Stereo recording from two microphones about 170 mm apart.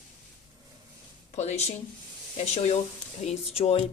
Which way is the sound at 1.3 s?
40° left (ahead or behind).